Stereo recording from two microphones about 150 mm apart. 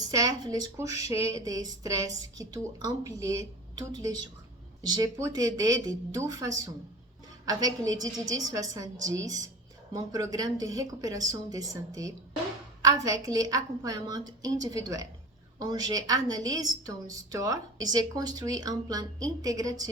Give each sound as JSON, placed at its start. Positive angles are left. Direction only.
{"t": 0.1, "sound": "a woman's voice", "side_deg": -25}